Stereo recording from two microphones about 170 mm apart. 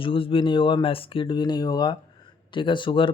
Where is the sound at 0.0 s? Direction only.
30° left (ahead or behind).